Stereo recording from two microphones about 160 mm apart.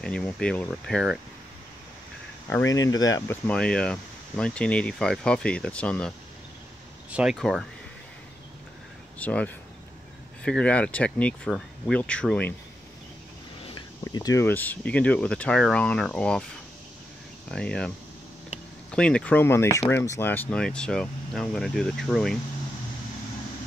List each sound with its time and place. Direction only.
0.0 s speech: 5° left (ahead or behind)
2.5 s speech: 20° left (ahead or behind)
3.3 s speech: 10° left (ahead or behind)
7.1 s speech: 10° right (ahead or behind)
9.2 s speech: 10° left (ahead or behind)
14.0 s speech: 20° left (ahead or behind); by 16.4 s 5° left (ahead or behind)
17.5 s speech: 5° left (ahead or behind)